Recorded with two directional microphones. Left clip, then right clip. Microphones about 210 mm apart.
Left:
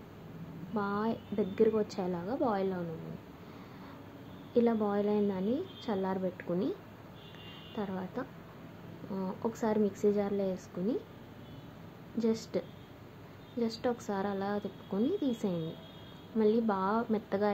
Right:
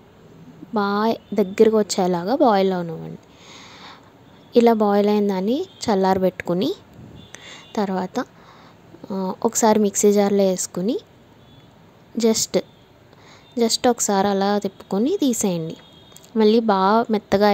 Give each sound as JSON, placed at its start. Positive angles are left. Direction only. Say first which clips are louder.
{"t": 0.7, "sound": "a woman's voice", "louder": "right 14 dB", "side_deg": -45}
{"t": 4.6, "sound": "a woman's voice", "louder": "right 14 dB", "side_deg": -45}
{"t": 7.3, "sound": "a sound", "louder": "right 15 dB", "side_deg": -50}
{"t": 9.1, "sound": "a woman's voice", "louder": "right 14 dB", "side_deg": -45}
{"t": 12.2, "sound": "a woman's voice", "louder": "right 14 dB", "side_deg": -45}